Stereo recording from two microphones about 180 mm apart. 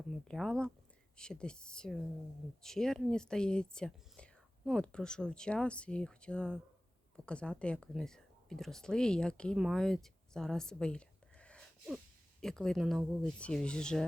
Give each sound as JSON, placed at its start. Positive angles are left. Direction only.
{"t": 0.3, "sound": "speech", "side_deg": 5}